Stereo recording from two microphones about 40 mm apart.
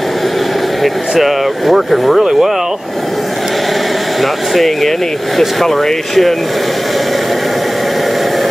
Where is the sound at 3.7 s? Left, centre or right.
Centre.